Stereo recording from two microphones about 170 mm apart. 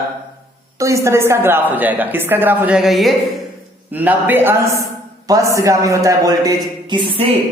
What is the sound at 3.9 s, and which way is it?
A woman's voice, 10° right (ahead or behind).